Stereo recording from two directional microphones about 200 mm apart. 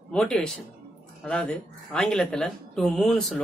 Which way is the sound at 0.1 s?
5° left (ahead or behind).